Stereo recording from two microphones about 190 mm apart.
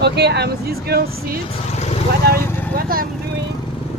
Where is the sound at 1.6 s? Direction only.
35° left (ahead or behind).